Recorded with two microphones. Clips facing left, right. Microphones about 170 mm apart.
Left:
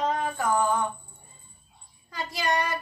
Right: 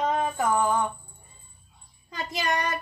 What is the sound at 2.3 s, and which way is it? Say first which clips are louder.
Child singing: left 1 dB; 20° right (ahead or behind).